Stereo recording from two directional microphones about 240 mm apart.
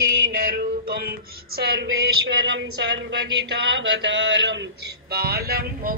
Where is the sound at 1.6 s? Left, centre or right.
Right.